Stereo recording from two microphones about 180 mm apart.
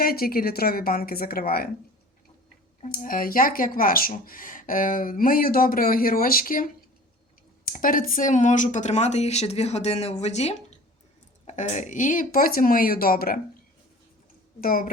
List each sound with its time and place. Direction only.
0.0 s a woman's voice: 55° left (ahead or behind)
2.8 s speech: 50° left (ahead or behind)
7.7 s speech: 50° left (ahead or behind)
14.6 s speech: 50° left (ahead or behind)